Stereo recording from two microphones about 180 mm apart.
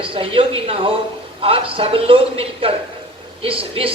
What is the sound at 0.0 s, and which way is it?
A man's voice, 30° right (ahead or behind).